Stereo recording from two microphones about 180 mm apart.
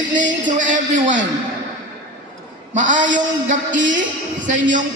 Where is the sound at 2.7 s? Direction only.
45° right (ahead or behind).